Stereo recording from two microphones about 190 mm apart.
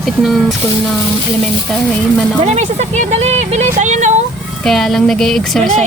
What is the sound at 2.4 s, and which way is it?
Speech, 35° right (ahead or behind).